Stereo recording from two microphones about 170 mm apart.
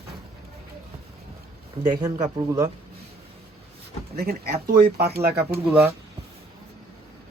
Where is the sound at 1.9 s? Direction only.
20° right (ahead or behind).